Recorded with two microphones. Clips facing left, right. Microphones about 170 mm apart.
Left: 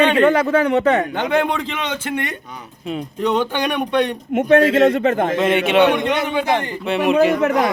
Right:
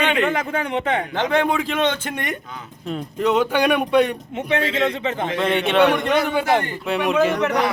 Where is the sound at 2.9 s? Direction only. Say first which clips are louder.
Even; centre (ahead or behind).